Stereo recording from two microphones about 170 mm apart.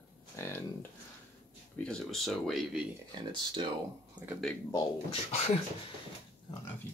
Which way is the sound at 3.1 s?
30° right (ahead or behind).